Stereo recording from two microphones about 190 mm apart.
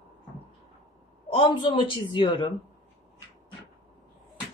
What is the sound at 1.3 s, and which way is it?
A woman's voice, 25° left (ahead or behind).